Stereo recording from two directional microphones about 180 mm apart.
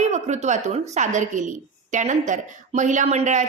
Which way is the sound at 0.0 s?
40° right (ahead or behind).